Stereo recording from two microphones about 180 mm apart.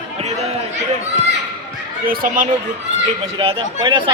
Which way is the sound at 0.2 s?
35° right (ahead or behind).